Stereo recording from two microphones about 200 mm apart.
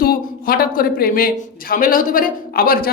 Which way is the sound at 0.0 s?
45° left (ahead or behind).